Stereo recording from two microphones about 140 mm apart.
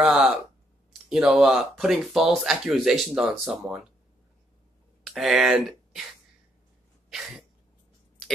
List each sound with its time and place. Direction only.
0.0 s speech: 5° right (ahead or behind)
5.0 s speech: centre (ahead or behind)
7.1 s sneeze: 5° right (ahead or behind)